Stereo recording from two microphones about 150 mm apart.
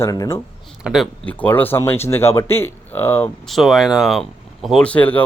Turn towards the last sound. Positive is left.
turn(degrees=10)  # may be behind; listen again after turning